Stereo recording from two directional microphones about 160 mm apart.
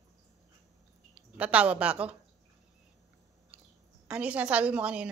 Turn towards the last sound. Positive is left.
turn(degrees=-5)  # may be behind; listen again after turning